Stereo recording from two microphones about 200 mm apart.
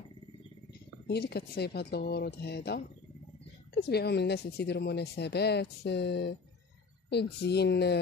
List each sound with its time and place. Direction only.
1.0 s speech: 55° left (ahead or behind)
3.8 s speech: 55° left (ahead or behind)